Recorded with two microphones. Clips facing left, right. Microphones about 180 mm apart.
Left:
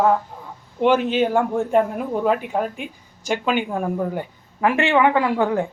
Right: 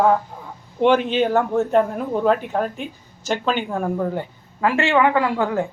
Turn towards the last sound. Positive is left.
turn(degrees=20)  # may be behind; listen again after turning